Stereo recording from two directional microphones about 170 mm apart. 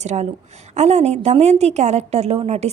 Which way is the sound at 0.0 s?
40° right (ahead or behind).